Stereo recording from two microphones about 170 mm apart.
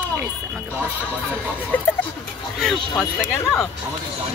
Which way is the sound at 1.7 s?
10° left (ahead or behind).